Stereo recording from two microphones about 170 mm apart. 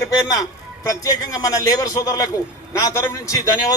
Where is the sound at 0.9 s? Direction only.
20° left (ahead or behind).